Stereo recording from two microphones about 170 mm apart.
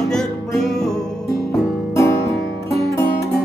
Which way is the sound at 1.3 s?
20° left (ahead or behind).